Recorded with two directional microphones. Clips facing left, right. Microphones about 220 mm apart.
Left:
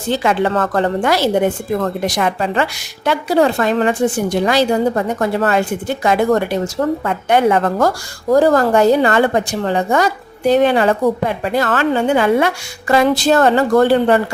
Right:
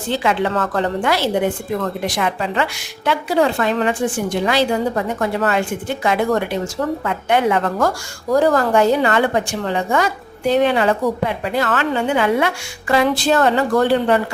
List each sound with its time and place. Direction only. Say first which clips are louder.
0.2 s a woman's voice: left 2 dB; 45° left (ahead or behind)